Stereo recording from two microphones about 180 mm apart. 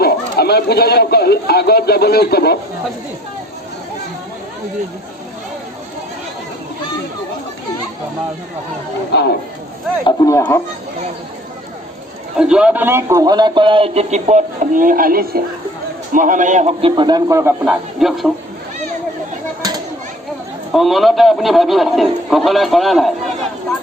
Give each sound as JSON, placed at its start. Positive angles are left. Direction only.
{"t": 0.0, "sound": "speech", "side_deg": 60}
{"t": 9.1, "sound": "speech", "side_deg": 70}
{"t": 10.0, "sound": "speech", "side_deg": 20}
{"t": 12.4, "sound": "a man's voice", "side_deg": -5}
{"t": 16.9, "sound": "speech", "side_deg": -25}
{"t": 18.0, "sound": "a man's voice", "side_deg": 0}
{"t": 20.7, "sound": "a man's voice", "side_deg": 0}